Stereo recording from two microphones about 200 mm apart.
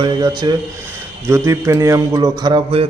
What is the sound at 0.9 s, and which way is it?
Speech, 15° right (ahead or behind).